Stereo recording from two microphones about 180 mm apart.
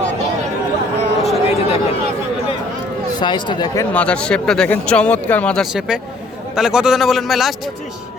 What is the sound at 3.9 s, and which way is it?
Speech, 5° left (ahead or behind).